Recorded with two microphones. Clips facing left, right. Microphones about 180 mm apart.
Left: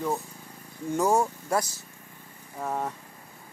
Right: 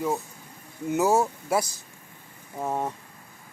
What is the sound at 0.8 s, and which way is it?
Speech, 5° right (ahead or behind).